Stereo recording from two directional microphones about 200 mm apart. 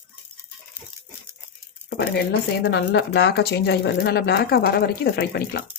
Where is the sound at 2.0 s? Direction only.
60° left (ahead or behind).